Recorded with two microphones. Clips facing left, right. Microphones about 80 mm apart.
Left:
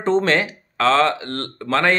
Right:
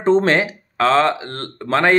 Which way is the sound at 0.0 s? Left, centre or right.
Right.